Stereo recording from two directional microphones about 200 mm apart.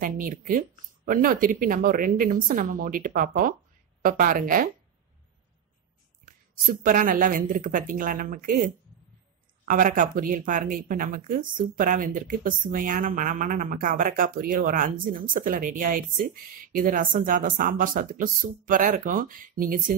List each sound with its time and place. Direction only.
0.0 s a woman's voice: 45° right (ahead or behind)
6.2 s a woman's voice: 40° right (ahead or behind)